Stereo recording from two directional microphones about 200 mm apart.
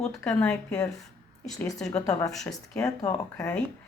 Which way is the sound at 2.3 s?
Centre (ahead or behind).